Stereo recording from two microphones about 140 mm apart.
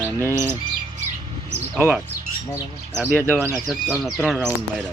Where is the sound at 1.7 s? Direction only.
10° right (ahead or behind).